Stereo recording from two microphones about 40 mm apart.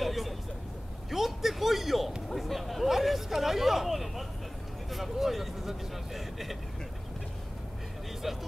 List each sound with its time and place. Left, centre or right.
0.0 s vehicle: centre
1.1 s a sound: centre
4.9 s vehicle: centre